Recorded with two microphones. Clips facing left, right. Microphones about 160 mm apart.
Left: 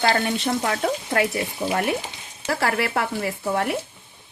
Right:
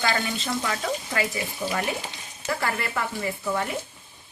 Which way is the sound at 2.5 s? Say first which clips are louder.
Left 5 dB; 75° left (ahead or behind).